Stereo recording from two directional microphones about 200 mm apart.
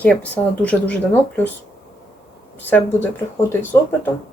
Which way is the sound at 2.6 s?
10° left (ahead or behind).